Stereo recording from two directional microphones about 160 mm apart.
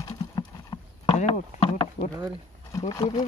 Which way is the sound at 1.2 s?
40° left (ahead or behind).